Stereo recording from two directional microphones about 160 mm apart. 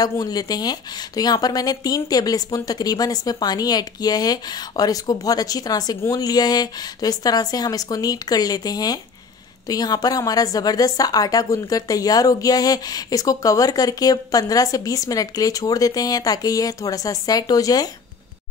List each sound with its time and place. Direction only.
0.0 s speech: 25° left (ahead or behind)